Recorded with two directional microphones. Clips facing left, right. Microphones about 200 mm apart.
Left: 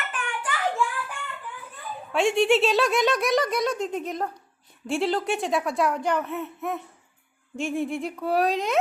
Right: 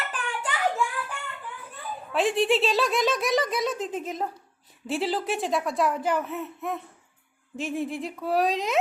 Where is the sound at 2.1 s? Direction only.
Centre (ahead or behind).